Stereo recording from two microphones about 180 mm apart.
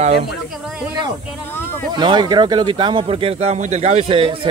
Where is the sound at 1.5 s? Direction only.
10° left (ahead or behind).